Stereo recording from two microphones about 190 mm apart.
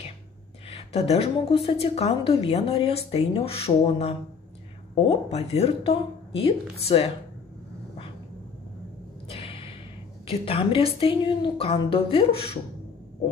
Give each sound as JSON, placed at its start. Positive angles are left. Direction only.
{"t": 0.7, "sound": "a woman's voice", "side_deg": 35}
{"t": 9.3, "sound": "a sound", "side_deg": 30}
{"t": 10.2, "sound": "a woman's voice", "side_deg": 30}